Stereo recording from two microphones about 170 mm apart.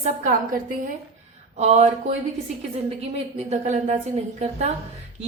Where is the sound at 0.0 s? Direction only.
50° right (ahead or behind).